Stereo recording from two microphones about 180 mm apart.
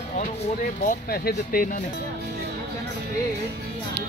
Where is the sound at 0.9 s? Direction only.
55° left (ahead or behind).